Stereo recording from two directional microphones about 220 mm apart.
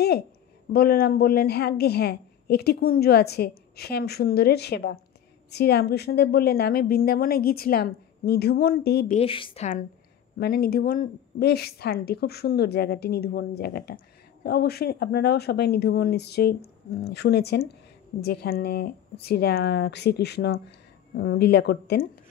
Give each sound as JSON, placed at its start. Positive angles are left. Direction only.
{"t": 0.7, "sound": "a woman's voice", "side_deg": 45}
{"t": 9.1, "sound": "a woman's voice", "side_deg": 25}
{"t": 10.4, "sound": "a woman's voice", "side_deg": 45}